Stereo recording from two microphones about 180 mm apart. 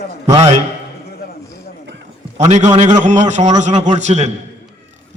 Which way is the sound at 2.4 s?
40° right (ahead or behind).